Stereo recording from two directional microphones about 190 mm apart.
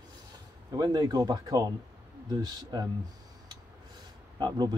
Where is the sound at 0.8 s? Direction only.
20° right (ahead or behind).